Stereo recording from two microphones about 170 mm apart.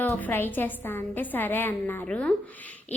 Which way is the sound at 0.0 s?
10° left (ahead or behind).